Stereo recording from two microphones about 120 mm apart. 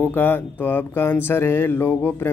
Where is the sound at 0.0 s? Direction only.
15° left (ahead or behind).